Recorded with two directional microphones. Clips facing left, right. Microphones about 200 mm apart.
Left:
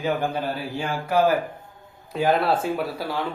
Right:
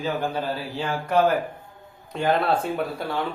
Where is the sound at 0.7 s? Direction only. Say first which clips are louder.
Even; 5° left (ahead or behind).